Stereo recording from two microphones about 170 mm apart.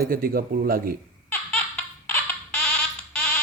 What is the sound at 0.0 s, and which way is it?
Speech, 60° right (ahead or behind).